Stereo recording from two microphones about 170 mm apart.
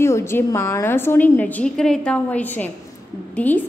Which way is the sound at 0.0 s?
15° left (ahead or behind).